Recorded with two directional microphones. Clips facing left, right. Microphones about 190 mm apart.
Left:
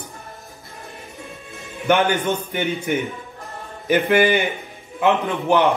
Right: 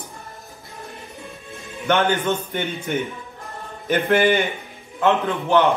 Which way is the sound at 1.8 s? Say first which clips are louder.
Left 1 dB; 10° left (ahead or behind).